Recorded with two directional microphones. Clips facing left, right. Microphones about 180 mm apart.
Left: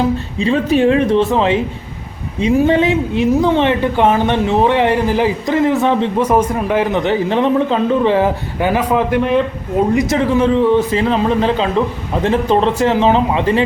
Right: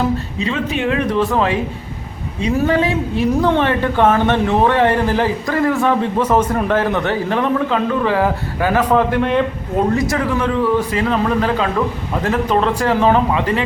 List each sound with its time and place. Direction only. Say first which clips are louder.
0.3 s a man's voice: left 7 dB; 35° left (ahead or behind)
6.2 s a woman's voice: left 1 dB; 10° left (ahead or behind)
8.8 s a woman's voice: right 2 dB; 10° left (ahead or behind)
9.9 s a man's voice: left 4 dB; 20° left (ahead or behind)